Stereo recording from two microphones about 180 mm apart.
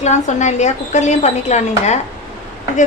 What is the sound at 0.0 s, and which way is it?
Speech, 40° left (ahead or behind).